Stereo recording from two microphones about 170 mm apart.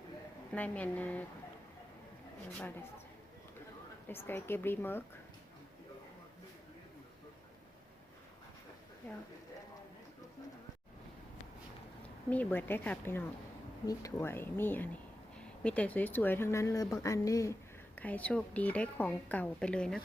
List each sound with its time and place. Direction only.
0.5 s a woman's voice: 10° left (ahead or behind)
4.1 s a woman's voice: 15° left (ahead or behind)
12.0 s a woman's voice: 10° left (ahead or behind)